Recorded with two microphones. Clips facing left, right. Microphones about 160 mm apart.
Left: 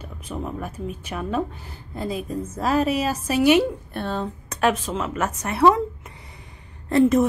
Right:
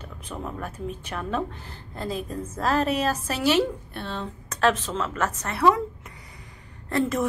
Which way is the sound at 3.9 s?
45° left (ahead or behind).